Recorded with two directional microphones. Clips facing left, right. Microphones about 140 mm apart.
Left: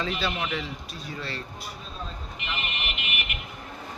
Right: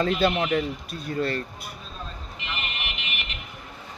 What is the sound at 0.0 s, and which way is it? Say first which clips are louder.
Speech: right 7 dB; 50° right (ahead or behind).